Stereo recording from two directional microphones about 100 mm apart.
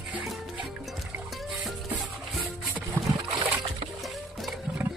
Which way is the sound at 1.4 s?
Centre (ahead or behind).